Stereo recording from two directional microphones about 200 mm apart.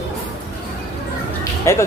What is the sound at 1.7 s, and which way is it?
Speech, 15° left (ahead or behind).